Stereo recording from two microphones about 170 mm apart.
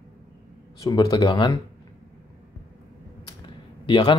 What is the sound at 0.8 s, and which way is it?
Speech, 25° left (ahead or behind).